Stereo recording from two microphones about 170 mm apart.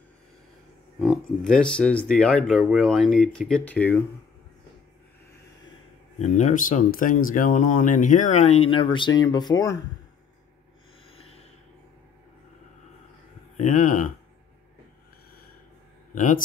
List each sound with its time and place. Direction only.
0.9 s speech: centre (ahead or behind)
6.1 s speech: 45° left (ahead or behind); by 9.8 s 20° left (ahead or behind)
11.1 s a sound: 35° left (ahead or behind)
13.6 s speech: 50° left (ahead or behind)
16.2 s speech: 50° left (ahead or behind)